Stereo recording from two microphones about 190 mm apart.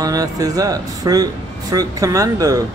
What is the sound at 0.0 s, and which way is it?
Speech, 20° right (ahead or behind).